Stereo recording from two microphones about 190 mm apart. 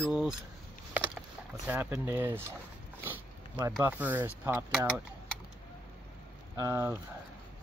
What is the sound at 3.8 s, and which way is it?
Speech, 10° right (ahead or behind).